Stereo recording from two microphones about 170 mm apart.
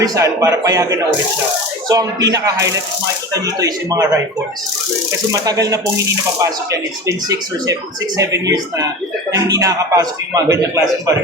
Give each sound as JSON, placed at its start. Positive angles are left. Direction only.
{"t": 0.0, "sound": "speech", "side_deg": -20}
{"t": 5.3, "sound": "speech", "side_deg": -20}